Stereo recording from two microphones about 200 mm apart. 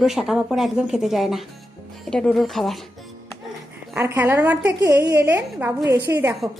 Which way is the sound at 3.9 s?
10° right (ahead or behind).